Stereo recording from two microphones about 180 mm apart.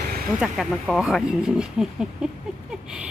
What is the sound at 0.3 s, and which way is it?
Speech, 5° right (ahead or behind).